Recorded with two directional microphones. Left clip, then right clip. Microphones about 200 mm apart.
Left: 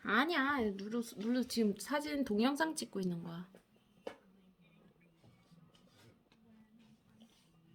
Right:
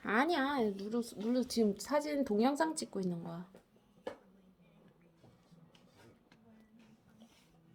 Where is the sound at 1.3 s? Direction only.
35° left (ahead or behind).